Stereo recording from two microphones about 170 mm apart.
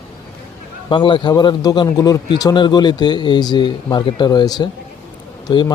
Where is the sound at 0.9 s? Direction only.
30° left (ahead or behind).